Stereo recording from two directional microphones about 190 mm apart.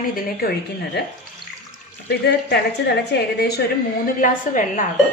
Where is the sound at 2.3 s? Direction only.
60° left (ahead or behind).